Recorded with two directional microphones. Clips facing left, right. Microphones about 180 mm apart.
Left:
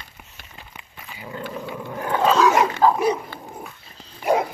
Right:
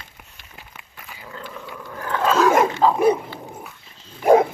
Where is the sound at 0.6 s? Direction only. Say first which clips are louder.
Even; centre (ahead or behind).